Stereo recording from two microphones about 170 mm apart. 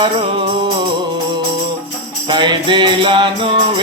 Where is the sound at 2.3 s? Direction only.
25° right (ahead or behind).